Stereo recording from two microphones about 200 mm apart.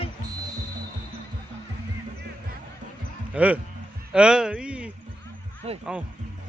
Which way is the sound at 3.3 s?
5° right (ahead or behind).